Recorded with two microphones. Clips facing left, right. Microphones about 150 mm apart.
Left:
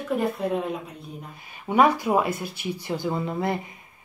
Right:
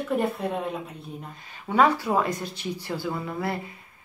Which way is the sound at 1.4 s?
15° left (ahead or behind).